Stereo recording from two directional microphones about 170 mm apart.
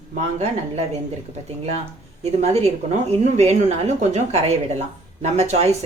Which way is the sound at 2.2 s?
40° right (ahead or behind).